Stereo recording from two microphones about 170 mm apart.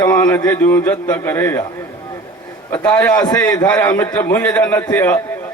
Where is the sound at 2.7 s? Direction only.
15° left (ahead or behind).